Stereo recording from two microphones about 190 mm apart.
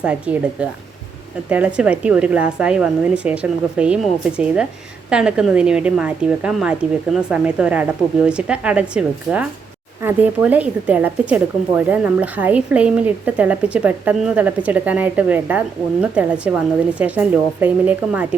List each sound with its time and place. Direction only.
0.0 s a woman's voice: 5° right (ahead or behind)